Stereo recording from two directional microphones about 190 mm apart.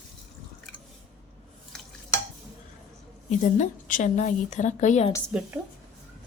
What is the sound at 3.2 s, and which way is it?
A woman's voice, 40° left (ahead or behind).